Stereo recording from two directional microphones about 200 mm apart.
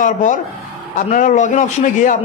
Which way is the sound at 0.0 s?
40° left (ahead or behind).